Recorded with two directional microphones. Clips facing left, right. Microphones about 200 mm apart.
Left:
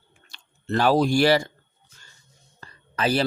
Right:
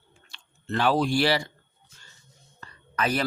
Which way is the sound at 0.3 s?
40° left (ahead or behind).